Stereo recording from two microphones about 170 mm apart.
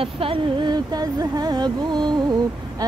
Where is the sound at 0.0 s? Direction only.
30° right (ahead or behind).